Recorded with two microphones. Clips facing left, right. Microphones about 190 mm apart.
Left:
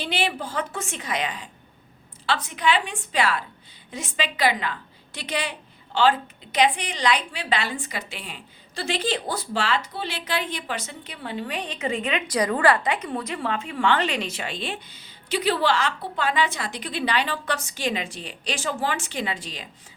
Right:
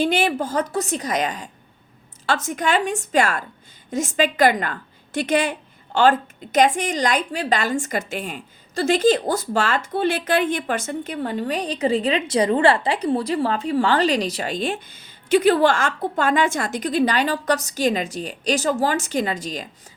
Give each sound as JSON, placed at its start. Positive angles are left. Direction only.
{"t": 0.0, "sound": "a woman's voice", "side_deg": -45}